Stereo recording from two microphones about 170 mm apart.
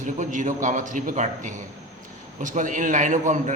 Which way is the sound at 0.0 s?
50° right (ahead or behind).